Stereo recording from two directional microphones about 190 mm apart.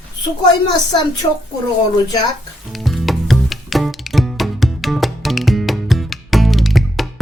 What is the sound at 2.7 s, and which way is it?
Music, centre (ahead or behind).